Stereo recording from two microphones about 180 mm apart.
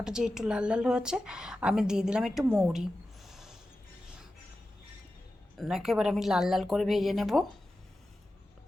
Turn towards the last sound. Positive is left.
turn(degrees=0)  # may be behind; listen again after turning